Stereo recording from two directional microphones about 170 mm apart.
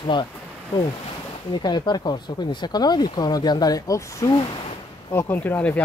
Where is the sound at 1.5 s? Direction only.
25° left (ahead or behind).